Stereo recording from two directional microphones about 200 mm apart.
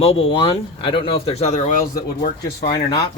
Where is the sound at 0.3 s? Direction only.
30° left (ahead or behind).